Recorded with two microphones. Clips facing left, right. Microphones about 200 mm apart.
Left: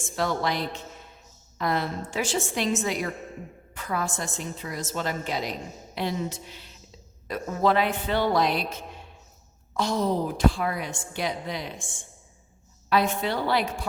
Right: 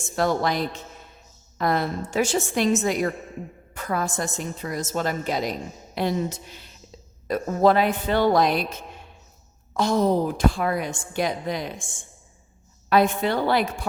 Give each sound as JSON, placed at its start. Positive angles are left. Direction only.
{"t": 0.2, "sound": "a woman's voice", "side_deg": -45}
{"t": 9.7, "sound": "a woman's voice", "side_deg": -50}
{"t": 12.9, "sound": "a woman's voice", "side_deg": -50}